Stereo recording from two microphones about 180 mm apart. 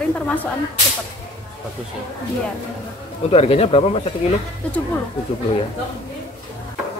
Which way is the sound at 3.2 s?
35° left (ahead or behind).